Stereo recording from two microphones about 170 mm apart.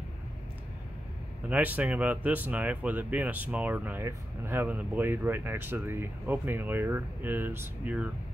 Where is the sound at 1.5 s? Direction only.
10° right (ahead or behind).